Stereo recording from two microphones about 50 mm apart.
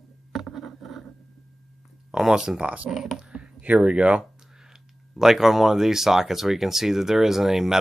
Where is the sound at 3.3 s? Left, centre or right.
Right.